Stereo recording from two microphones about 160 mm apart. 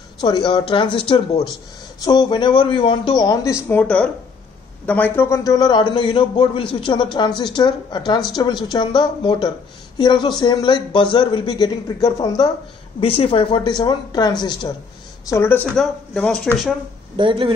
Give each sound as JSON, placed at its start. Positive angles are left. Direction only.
{"t": 0.2, "sound": "speech", "side_deg": 25}
{"t": 3.6, "sound": "a woman's voice", "side_deg": 10}
{"t": 13.0, "sound": "speech", "side_deg": 35}
{"t": 15.2, "sound": "a woman's voice", "side_deg": 15}
{"t": 15.7, "sound": "speech", "side_deg": 5}
{"t": 17.2, "sound": "speech", "side_deg": -30}